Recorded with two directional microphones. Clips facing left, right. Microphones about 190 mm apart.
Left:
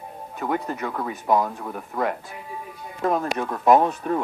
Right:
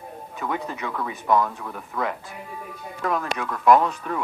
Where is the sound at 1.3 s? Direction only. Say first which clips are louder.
Even; 10° left (ahead or behind).